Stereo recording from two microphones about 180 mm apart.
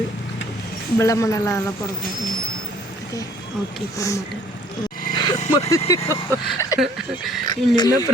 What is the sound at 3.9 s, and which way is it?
Speech, 20° left (ahead or behind).